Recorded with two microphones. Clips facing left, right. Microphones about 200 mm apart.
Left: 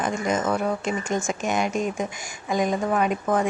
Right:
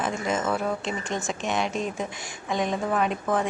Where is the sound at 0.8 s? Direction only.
45° left (ahead or behind).